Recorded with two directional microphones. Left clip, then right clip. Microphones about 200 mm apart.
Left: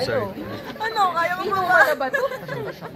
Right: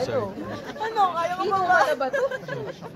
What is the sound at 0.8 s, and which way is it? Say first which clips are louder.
Speech: left 2 dB; 30° right (ahead or behind).